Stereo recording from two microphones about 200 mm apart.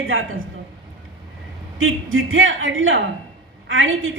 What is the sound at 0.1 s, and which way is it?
Speech, 80° right.